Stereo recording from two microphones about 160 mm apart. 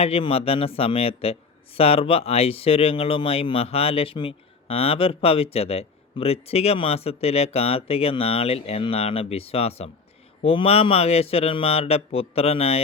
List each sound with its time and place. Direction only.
0.0 s speech: 35° left (ahead or behind)